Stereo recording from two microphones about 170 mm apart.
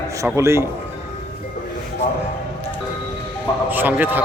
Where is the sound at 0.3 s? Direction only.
15° right (ahead or behind).